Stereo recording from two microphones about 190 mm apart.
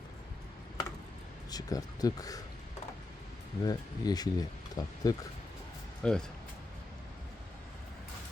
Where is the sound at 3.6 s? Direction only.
20° left (ahead or behind).